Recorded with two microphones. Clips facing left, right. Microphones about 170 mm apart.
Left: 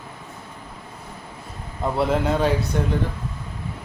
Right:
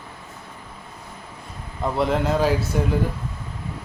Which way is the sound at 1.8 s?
Centre (ahead or behind).